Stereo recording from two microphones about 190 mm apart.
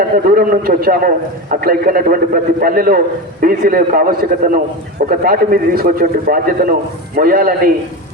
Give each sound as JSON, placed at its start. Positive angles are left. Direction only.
{"t": 0.3, "sound": "a man's voice", "side_deg": -50}